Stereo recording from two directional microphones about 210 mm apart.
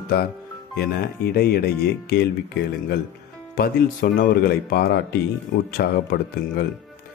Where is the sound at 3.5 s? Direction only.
45° left (ahead or behind).